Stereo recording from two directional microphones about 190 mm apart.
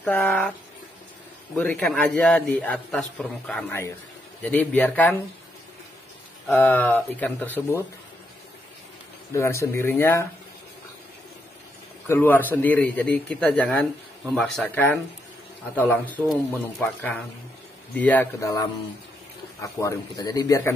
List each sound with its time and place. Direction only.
0.0 s a man's voice: 10° left (ahead or behind)
1.6 s a man's voice: 10° left (ahead or behind)
6.4 s a man's voice: 10° left (ahead or behind)
9.3 s a man's voice: 15° left (ahead or behind)
12.1 s a man's voice: 10° left (ahead or behind)